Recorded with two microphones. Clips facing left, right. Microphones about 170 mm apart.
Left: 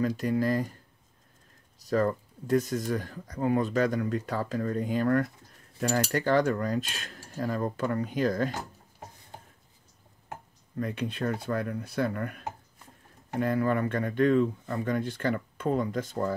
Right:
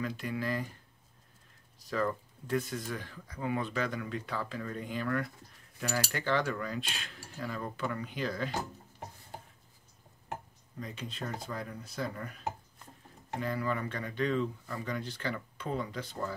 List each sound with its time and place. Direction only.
0.0 s speech: 40° left (ahead or behind)
1.9 s speech: 40° left (ahead or behind)
10.8 s speech: 60° left (ahead or behind); by 16.3 s 45° left (ahead or behind)